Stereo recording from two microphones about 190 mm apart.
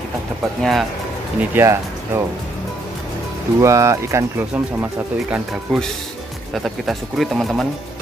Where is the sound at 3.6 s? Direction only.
15° right (ahead or behind).